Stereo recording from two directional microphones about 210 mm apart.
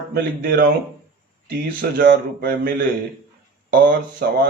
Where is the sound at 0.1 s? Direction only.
45° right (ahead or behind).